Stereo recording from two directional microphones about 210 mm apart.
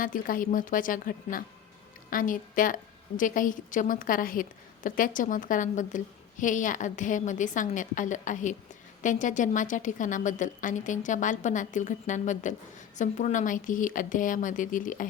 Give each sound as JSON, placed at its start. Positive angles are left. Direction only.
{"t": 0.0, "sound": "a woman's voice", "side_deg": 40}